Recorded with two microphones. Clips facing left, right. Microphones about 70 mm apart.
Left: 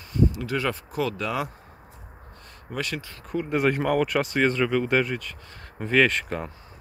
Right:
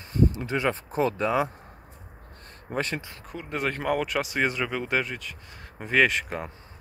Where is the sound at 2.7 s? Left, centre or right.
Right.